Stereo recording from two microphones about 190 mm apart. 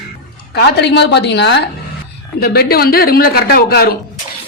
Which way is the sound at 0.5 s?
60° left (ahead or behind).